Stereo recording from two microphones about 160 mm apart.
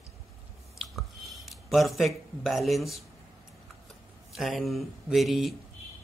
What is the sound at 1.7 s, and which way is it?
Speech, centre (ahead or behind).